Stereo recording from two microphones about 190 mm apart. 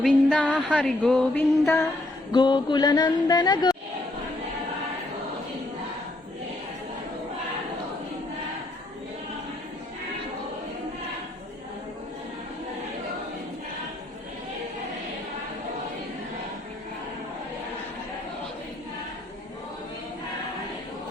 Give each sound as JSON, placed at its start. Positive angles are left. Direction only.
{"t": 0.0, "sound": "speech", "side_deg": 5}
{"t": 0.7, "sound": "a sound", "side_deg": 5}
{"t": 2.3, "sound": "speech", "side_deg": 25}